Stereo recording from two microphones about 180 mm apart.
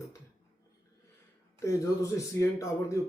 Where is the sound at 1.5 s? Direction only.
15° left (ahead or behind).